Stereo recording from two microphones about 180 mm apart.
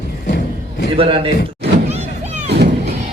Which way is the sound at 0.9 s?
30° right (ahead or behind).